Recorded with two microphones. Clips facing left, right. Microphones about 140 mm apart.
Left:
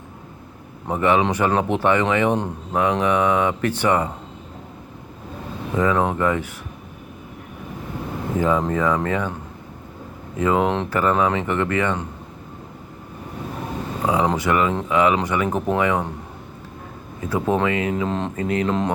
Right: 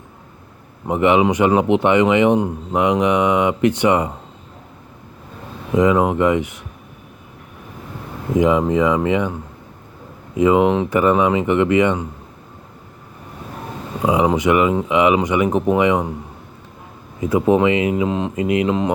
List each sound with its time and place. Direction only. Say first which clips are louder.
0.9 s speech: right 4 dB; 20° right (ahead or behind)
5.7 s speech: right 5 dB; 15° right (ahead or behind)
8.4 s speech: right 5 dB; 15° right (ahead or behind)
10.3 s speech: right 5 dB; 10° right (ahead or behind)
14.0 s speech: right 4 dB; 15° right (ahead or behind)
17.2 s speech: right 6 dB; 20° right (ahead or behind)